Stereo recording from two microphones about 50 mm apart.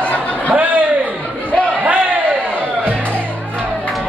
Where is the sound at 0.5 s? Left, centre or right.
Right.